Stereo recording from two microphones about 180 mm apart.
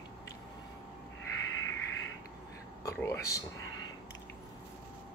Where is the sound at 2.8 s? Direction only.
15° left (ahead or behind).